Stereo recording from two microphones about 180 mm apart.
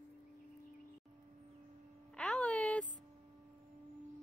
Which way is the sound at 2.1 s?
5° left (ahead or behind).